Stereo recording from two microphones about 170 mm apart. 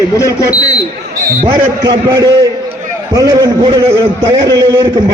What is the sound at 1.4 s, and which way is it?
A man's voice, 25° right (ahead or behind).